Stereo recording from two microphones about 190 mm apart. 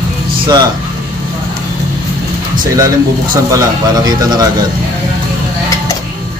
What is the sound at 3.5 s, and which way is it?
Speech, 20° right (ahead or behind).